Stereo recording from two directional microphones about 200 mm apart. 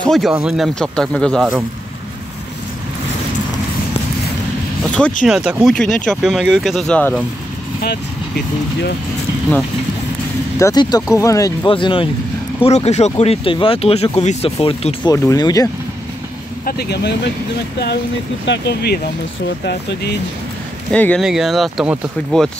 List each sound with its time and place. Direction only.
0.0 s speech: centre (ahead or behind)
5.2 s speech: 5° right (ahead or behind)
10.6 s speech: 20° left (ahead or behind)
15.1 s speech: 15° left (ahead or behind)
16.6 s speech: 50° left (ahead or behind)
18.4 s speech: 60° left (ahead or behind)
20.9 s speech: 5° left (ahead or behind)